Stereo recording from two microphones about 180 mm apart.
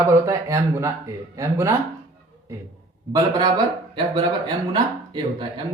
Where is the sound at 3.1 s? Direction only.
20° right (ahead or behind).